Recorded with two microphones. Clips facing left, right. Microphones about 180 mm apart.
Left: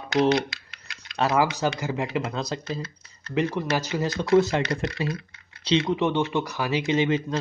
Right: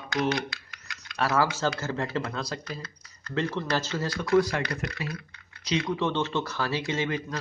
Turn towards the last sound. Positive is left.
turn(degrees=20)  # may be behind; listen again after turning